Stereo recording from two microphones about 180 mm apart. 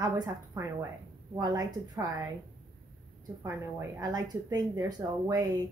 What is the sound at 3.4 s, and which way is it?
Speech, 20° right (ahead or behind).